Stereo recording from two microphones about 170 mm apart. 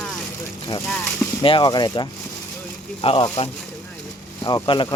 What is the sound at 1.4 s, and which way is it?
Speech, 30° left (ahead or behind).